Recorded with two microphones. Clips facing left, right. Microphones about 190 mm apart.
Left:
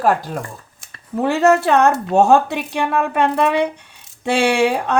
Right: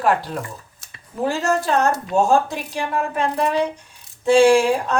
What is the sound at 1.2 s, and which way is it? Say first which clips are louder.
A woman's voice: left 6 dB; 60° left (ahead or behind).